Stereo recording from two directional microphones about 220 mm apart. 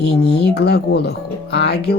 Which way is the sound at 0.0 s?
45° left (ahead or behind).